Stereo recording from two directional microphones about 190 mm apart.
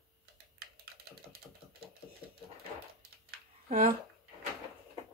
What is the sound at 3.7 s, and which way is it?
Speech, 45° right (ahead or behind).